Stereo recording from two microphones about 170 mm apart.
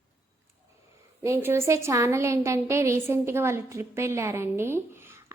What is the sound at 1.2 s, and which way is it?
A woman's voice, 15° right (ahead or behind).